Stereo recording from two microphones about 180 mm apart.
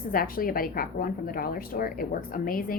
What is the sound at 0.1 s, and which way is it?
A woman's voice, 50° left (ahead or behind).